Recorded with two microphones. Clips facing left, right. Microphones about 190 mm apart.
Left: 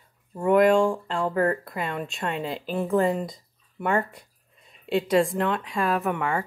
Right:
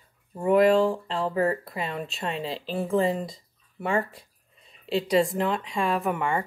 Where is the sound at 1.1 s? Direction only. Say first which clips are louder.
Left 1 dB; 25° right (ahead or behind).